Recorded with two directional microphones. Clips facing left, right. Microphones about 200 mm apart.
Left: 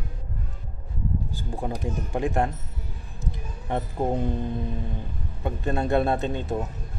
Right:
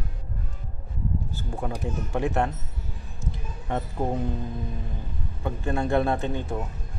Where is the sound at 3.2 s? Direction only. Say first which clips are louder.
Left 1 dB; 20° left (ahead or behind).